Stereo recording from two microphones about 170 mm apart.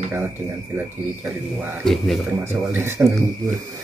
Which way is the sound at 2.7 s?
15° right (ahead or behind).